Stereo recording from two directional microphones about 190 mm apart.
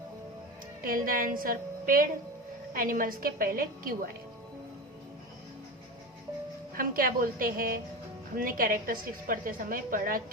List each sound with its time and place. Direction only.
0.9 s a woman's voice: 50° right (ahead or behind)
6.7 s a woman's voice: 50° right (ahead or behind)